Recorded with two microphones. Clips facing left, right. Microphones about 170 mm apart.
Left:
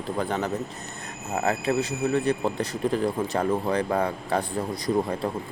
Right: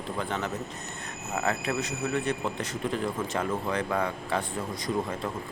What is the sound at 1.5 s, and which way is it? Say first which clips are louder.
A man's voice: left 5 dB; 30° left (ahead or behind).